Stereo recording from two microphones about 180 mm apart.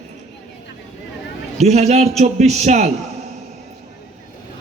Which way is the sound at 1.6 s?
40° right (ahead or behind).